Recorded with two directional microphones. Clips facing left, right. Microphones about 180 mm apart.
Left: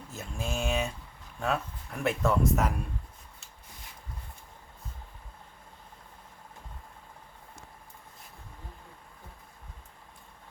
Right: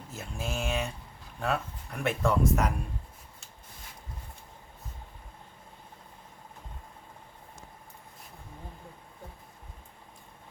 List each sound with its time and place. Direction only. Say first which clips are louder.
0.1 s speech: left 1 dB; centre (ahead or behind)